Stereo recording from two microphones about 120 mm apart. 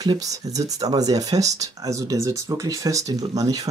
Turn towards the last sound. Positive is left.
turn(degrees=-30)  # may be behind; listen again after turning